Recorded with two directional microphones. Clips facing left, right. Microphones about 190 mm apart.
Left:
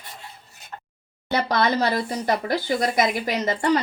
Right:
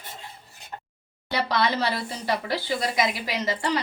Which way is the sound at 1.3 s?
45° left (ahead or behind).